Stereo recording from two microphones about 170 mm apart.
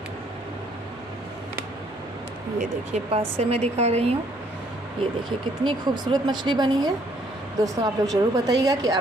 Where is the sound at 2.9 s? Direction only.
35° right (ahead or behind).